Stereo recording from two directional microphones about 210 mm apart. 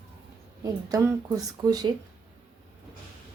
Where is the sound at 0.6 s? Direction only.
15° right (ahead or behind).